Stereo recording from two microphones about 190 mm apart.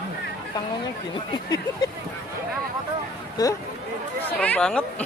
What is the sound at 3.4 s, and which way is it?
Speech, 20° left (ahead or behind).